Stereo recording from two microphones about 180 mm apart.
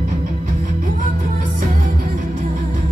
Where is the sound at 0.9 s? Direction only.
45° right (ahead or behind).